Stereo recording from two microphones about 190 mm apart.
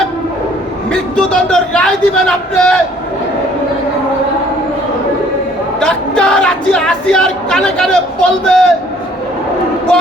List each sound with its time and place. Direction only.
1.1 s a woman's voice: 5° left (ahead or behind)
5.8 s a woman's voice: 5° left (ahead or behind)